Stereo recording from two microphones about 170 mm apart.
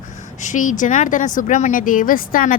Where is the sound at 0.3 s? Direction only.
50° left (ahead or behind).